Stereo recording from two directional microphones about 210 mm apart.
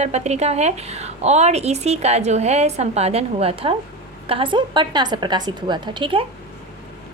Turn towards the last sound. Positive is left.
turn(degrees=-25)  # may be behind; listen again after turning